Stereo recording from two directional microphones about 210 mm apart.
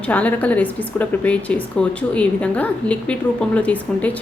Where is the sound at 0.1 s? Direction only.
5° left (ahead or behind).